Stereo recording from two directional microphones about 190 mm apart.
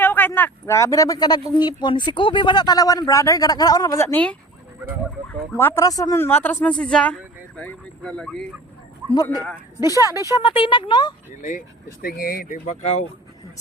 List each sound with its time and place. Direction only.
0.0 s speech: 10° left (ahead or behind)
10.0 s speech: 15° right (ahead or behind)
10.4 s speech: 25° left (ahead or behind)
12.0 s speech: 50° left (ahead or behind)